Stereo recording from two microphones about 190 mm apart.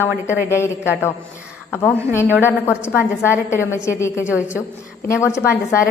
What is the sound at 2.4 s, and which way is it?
A woman's voice, 15° left (ahead or behind).